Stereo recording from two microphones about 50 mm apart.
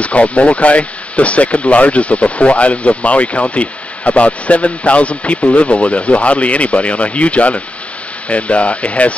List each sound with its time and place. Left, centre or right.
0.0 s speech: left